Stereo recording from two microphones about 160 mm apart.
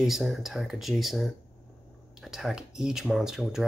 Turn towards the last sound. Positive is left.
turn(degrees=-5)  # may be behind; listen again after turning